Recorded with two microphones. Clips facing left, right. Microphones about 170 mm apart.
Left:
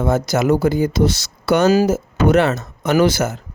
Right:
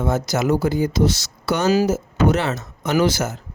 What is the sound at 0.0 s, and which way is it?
Speech, 55° left (ahead or behind).